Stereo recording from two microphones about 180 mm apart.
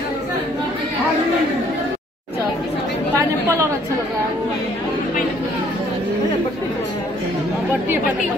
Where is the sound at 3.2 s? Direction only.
15° right (ahead or behind).